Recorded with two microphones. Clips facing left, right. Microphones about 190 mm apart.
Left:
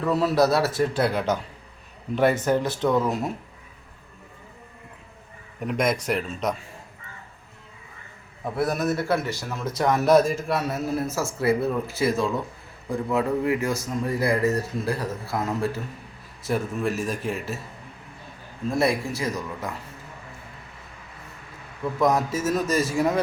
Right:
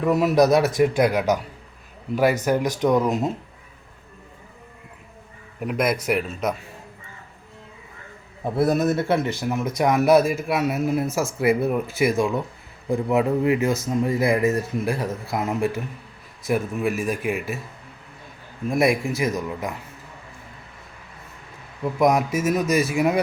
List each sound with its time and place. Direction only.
0.0 s speech: 15° right (ahead or behind)
5.5 s a man's voice: 5° right (ahead or behind)
8.4 s speech: 25° right (ahead or behind)
18.7 s speech: 15° right (ahead or behind)
21.9 s speech: 15° right (ahead or behind)